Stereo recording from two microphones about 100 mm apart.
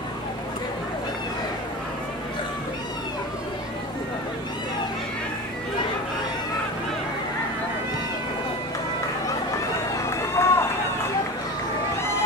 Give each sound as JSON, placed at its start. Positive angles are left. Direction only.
{"t": 10.0, "sound": "run", "side_deg": 30}